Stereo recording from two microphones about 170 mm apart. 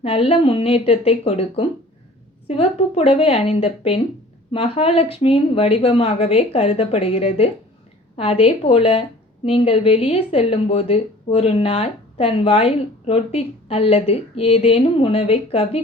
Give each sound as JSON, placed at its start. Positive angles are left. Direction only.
{"t": 0.0, "sound": "a woman's voice", "side_deg": 35}